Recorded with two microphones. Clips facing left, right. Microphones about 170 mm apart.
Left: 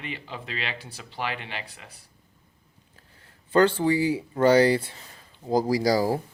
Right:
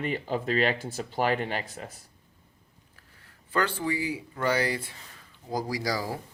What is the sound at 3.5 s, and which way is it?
Speech, 30° left (ahead or behind).